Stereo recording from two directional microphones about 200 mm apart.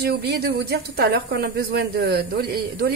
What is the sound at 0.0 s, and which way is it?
Speech, 55° right (ahead or behind).